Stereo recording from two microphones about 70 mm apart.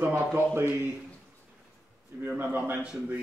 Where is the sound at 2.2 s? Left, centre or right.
Right.